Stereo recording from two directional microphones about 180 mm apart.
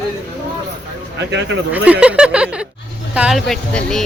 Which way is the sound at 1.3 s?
75° right (ahead or behind).